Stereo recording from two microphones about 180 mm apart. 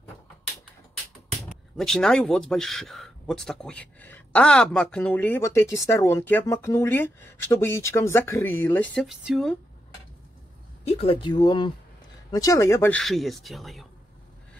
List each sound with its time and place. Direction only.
1.5 s speech: centre (ahead or behind)
10.9 s speech: 30° left (ahead or behind); by 13.0 s 15° left (ahead or behind)
13.0 s speech: centre (ahead or behind)